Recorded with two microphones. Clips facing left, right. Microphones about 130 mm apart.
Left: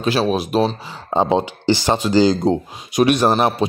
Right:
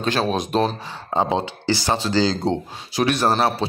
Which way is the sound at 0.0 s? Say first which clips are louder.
Left 3 dB; 5° left (ahead or behind).